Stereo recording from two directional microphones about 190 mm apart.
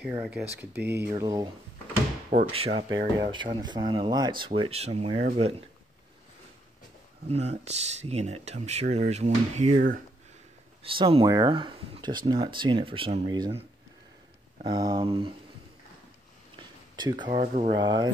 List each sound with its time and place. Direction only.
0.2 s speech: 5° right (ahead or behind)
2.3 s speech: 30° right (ahead or behind)
7.2 s speech: 35° right (ahead or behind)
10.8 s speech: 30° right (ahead or behind)
16.5 s a sound: 25° right (ahead or behind)
17.3 s speech: 35° right (ahead or behind)